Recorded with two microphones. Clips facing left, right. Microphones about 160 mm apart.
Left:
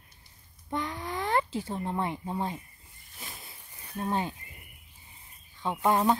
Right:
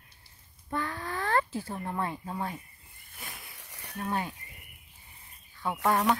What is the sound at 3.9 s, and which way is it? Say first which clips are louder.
Speech: left 2 dB; 25° left (ahead or behind).